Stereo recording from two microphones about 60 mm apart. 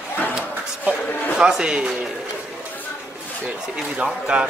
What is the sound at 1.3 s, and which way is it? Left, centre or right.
Speech, centre.